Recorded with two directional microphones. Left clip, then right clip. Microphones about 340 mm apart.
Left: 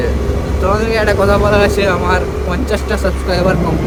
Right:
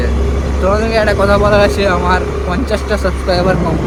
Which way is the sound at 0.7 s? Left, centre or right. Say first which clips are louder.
Right 1 dB; centre.